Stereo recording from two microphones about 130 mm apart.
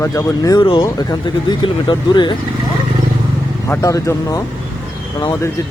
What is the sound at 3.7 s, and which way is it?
Speech, 25° left (ahead or behind).